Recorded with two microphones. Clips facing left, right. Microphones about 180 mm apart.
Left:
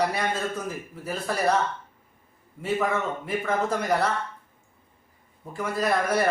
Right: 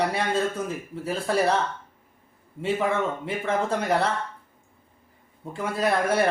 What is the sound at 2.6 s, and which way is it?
Speech, 25° right (ahead or behind).